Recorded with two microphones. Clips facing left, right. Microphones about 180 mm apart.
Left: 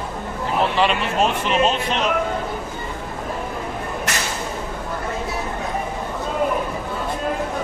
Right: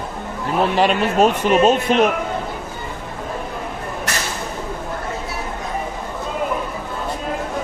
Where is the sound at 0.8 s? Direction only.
45° right (ahead or behind).